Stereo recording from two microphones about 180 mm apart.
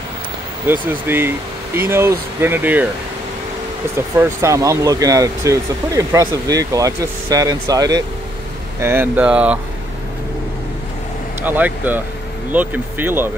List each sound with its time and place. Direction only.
0.7 s speech: 10° right (ahead or behind)
3.9 s speech: 15° right (ahead or behind)
11.4 s speech: 10° right (ahead or behind)